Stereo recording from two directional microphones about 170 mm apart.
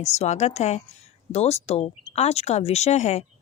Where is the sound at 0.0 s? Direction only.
40° left (ahead or behind).